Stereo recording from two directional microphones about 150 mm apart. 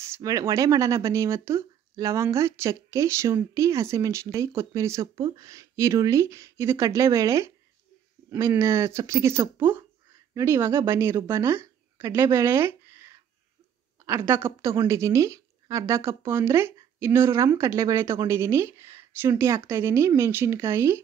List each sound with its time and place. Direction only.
0.0 s a woman's voice: 20° right (ahead or behind)